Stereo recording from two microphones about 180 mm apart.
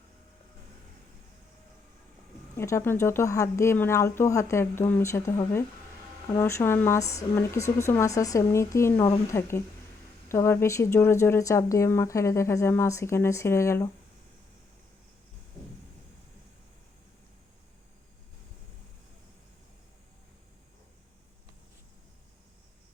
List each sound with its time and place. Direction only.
2.6 s speech: 15° left (ahead or behind)